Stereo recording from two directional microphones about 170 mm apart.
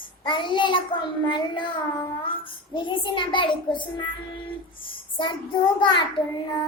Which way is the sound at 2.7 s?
30° left (ahead or behind).